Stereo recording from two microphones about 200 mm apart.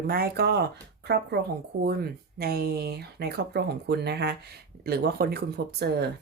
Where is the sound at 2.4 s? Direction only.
50° right (ahead or behind).